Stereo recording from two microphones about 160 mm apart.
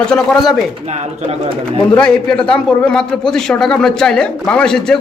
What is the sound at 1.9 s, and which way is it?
A man's voice, 5° left (ahead or behind).